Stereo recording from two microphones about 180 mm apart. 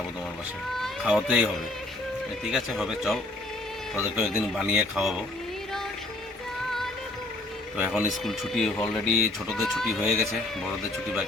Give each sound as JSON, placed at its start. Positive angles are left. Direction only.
{"t": 0.8, "sound": "speech", "side_deg": -5}
{"t": 2.5, "sound": "speech", "side_deg": 0}
{"t": 8.1, "sound": "speech", "side_deg": 0}